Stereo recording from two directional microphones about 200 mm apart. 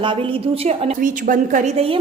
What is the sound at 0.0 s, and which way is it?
Speech, 25° right (ahead or behind).